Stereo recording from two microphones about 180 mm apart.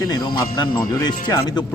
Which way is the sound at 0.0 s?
20° left (ahead or behind).